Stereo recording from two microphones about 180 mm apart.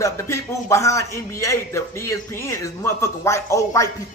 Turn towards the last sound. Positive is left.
turn(degrees=15)  # may be behind; listen again after turning